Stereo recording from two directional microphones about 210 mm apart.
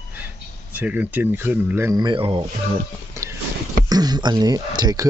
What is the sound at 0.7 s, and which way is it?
Speech, 10° right (ahead or behind).